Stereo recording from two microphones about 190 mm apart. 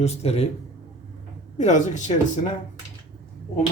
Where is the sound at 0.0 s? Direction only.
35° left (ahead or behind).